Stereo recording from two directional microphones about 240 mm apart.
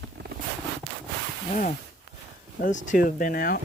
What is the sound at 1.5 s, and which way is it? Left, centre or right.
Speech, left.